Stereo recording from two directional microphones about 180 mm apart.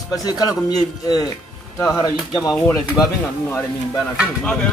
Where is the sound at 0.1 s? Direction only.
20° left (ahead or behind).